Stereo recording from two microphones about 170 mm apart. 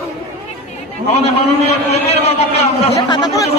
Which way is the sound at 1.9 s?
40° left (ahead or behind).